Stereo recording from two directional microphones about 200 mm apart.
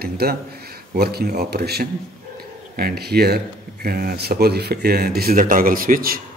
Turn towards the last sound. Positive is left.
turn(degrees=-45)  # may be behind; listen again after turning